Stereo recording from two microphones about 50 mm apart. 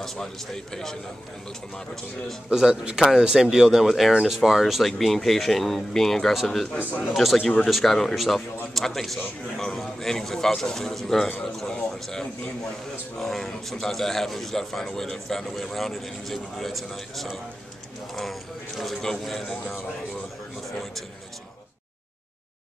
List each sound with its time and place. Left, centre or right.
2.5 s a man's voice: centre
6.9 s a man's voice: left
7.2 s a man's voice: centre
11.2 s speech: left
11.6 s a man's voice: centre
18.8 s speech: centre